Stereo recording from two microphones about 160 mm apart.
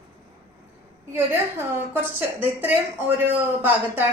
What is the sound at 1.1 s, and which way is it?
A woman's voice, 15° right (ahead or behind).